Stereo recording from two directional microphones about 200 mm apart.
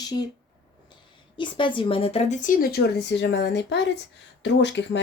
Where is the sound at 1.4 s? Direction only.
25° left (ahead or behind).